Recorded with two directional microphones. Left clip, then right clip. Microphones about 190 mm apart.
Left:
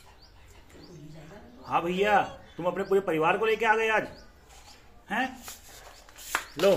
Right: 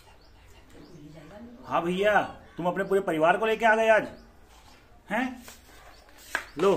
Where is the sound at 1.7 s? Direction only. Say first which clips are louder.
Even; 10° right (ahead or behind).